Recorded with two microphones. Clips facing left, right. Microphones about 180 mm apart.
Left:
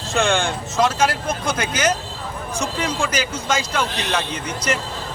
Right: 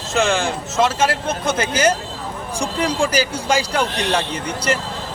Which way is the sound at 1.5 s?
25° right (ahead or behind).